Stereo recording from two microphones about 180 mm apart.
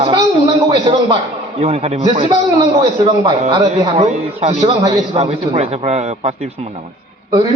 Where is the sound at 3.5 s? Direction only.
20° right (ahead or behind).